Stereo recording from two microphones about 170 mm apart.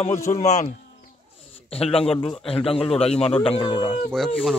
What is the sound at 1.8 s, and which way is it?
A man's voice, 35° left (ahead or behind).